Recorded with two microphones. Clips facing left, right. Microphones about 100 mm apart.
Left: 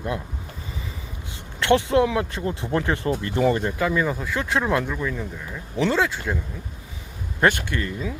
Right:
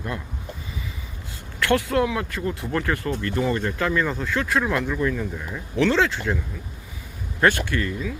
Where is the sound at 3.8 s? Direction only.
10° left (ahead or behind).